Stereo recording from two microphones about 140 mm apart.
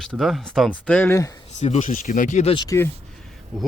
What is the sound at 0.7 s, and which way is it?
Speech, 10° left (ahead or behind).